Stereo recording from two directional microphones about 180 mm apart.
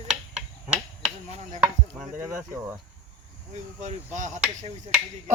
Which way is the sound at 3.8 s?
45° right (ahead or behind).